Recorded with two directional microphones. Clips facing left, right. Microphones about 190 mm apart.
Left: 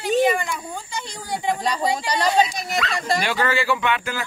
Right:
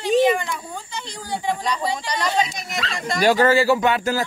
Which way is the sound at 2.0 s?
35° left (ahead or behind).